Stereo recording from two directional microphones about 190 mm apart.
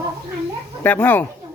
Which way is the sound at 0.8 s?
10° left (ahead or behind).